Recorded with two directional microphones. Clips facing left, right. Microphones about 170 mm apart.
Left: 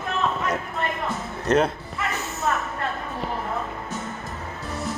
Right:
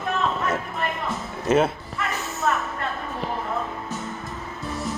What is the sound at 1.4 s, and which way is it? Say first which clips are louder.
Speech: right 1 dB; 5° right (ahead or behind).